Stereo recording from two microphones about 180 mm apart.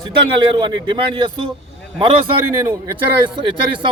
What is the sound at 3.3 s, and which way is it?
Speech, 25° right (ahead or behind).